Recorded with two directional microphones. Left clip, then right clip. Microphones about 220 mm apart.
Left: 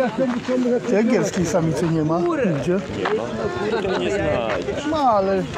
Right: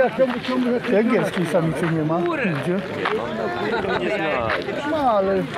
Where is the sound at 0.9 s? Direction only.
5° left (ahead or behind).